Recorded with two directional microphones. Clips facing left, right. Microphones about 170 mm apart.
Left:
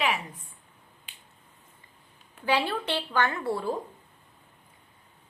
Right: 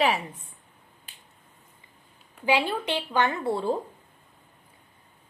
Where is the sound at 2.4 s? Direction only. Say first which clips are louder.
Right 2 dB; 15° right (ahead or behind).